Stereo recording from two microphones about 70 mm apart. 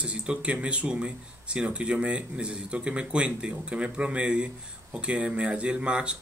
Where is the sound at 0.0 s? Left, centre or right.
Centre.